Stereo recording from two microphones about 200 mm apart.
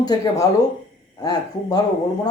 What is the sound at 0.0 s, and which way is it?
Speech, 20° left (ahead or behind).